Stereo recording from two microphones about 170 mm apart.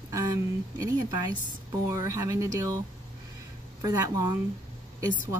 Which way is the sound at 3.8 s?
20° right (ahead or behind).